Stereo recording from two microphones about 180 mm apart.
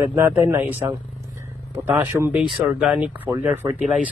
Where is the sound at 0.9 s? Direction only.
15° right (ahead or behind).